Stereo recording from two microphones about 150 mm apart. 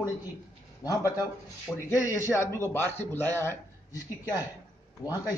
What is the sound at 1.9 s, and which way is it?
A man's voice, 20° left (ahead or behind).